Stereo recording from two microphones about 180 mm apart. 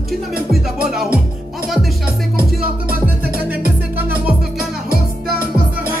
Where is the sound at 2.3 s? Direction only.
55° right (ahead or behind).